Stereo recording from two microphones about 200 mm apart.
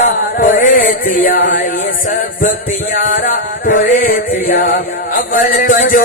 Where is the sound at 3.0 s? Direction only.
45° left (ahead or behind).